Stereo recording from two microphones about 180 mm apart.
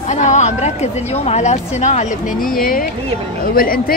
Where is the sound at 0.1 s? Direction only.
40° left (ahead or behind).